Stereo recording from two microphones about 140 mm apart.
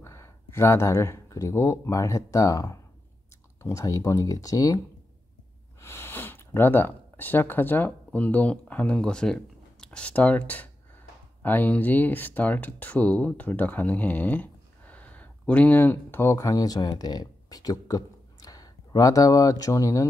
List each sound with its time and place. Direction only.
0.0 s speech: 20° left (ahead or behind)
5.8 s speech: 15° left (ahead or behind)